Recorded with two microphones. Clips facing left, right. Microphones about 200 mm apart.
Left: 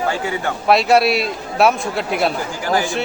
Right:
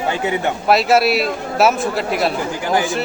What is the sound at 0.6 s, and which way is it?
A man's voice, centre (ahead or behind).